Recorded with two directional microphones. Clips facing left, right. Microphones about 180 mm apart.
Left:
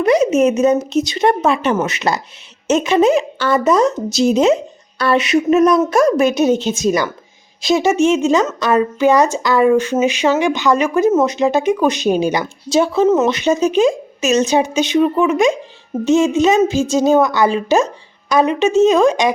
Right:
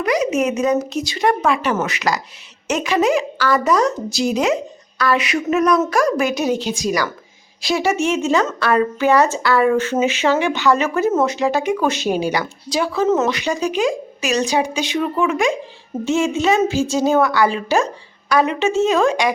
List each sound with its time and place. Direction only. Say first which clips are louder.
0.0 s a woman's voice: left 6 dB; 25° left (ahead or behind)